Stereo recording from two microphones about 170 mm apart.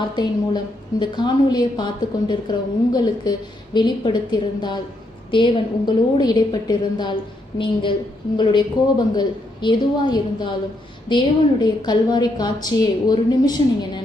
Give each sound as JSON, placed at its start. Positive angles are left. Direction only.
{"t": 0.2, "sound": "a woman's voice", "side_deg": 25}
{"t": 9.1, "sound": "a woman's voice", "side_deg": 25}